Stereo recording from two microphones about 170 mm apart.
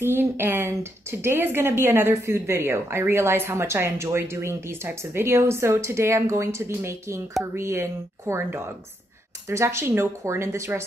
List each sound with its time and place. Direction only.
0.0 s speech: 15° right (ahead or behind)